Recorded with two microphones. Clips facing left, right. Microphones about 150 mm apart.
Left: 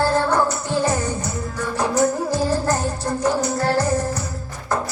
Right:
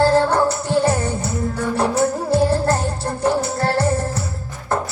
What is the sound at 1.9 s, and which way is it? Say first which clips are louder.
Music: right 1 dB; 30° right (ahead or behind).